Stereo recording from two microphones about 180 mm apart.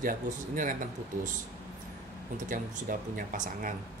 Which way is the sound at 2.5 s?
50° right (ahead or behind).